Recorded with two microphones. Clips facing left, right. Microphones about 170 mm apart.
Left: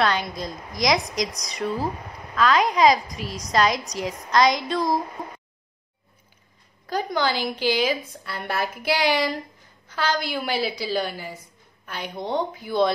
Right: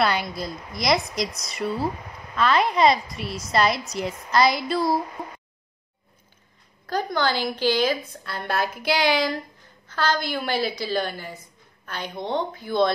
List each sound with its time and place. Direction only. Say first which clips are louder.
0.0 s a woman's voice: even; 5° right (ahead or behind)
3.9 s a woman's voice: left 1 dB; 5° right (ahead or behind)
6.9 s a woman's voice: even; 10° left (ahead or behind)